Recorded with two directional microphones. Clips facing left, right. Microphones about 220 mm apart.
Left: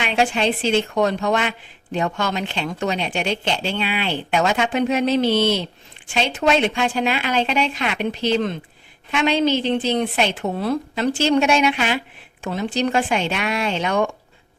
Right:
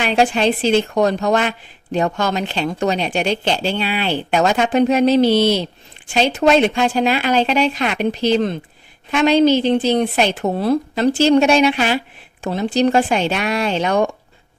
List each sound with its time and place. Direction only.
0.0 s a woman's voice: 40° right (ahead or behind)